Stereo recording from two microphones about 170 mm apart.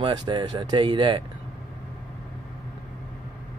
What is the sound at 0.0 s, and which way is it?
Speech, 25° right (ahead or behind).